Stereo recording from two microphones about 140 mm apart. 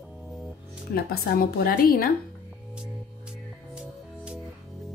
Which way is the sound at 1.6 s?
90° left.